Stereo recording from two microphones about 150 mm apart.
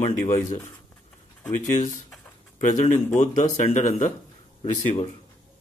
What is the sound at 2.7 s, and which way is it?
A man's voice, 50° left (ahead or behind).